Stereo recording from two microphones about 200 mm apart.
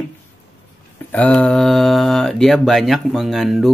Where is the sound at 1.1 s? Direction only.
5° left (ahead or behind).